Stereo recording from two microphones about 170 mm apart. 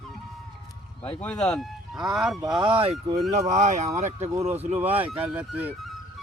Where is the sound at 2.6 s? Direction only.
30° right (ahead or behind).